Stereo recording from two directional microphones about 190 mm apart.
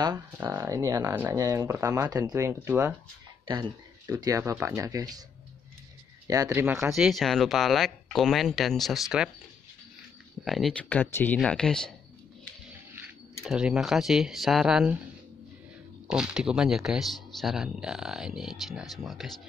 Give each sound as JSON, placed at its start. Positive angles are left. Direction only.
{"t": 0.0, "sound": "speech", "side_deg": -15}
{"t": 3.4, "sound": "speech", "side_deg": -20}
{"t": 6.2, "sound": "speech", "side_deg": -15}
{"t": 6.6, "sound": "speech", "side_deg": -5}
{"t": 10.4, "sound": "speech", "side_deg": 0}
{"t": 13.4, "sound": "speech", "side_deg": -5}
{"t": 16.1, "sound": "speech", "side_deg": -5}